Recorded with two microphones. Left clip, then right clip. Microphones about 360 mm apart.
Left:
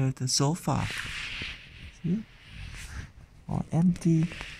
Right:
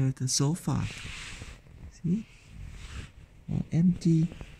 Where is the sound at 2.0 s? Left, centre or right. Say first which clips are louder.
Even; left.